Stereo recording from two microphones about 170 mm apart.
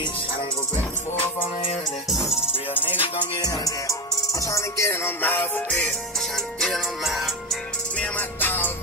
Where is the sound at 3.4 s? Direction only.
20° left (ahead or behind); by 7.1 s centre (ahead or behind).